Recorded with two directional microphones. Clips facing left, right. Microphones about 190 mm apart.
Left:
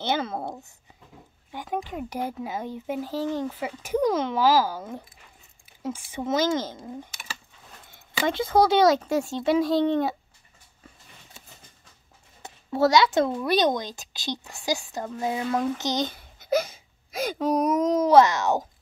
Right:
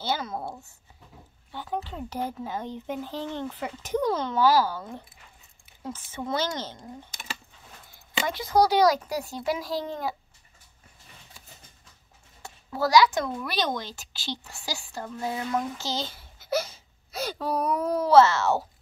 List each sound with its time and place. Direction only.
0.0 s speech: 25° left (ahead or behind)
1.5 s speech: 15° left (ahead or behind)
7.9 s speech: 25° left (ahead or behind)
11.4 s a sound: 25° left (ahead or behind)
12.4 s speech: 20° left (ahead or behind)